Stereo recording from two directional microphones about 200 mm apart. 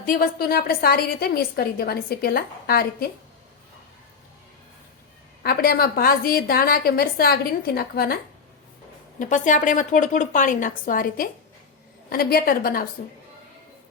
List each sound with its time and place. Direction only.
0.0 s a woman's voice: 45° left (ahead or behind)
5.4 s a woman's voice: 50° left (ahead or behind)
9.1 s a woman's voice: 40° left (ahead or behind)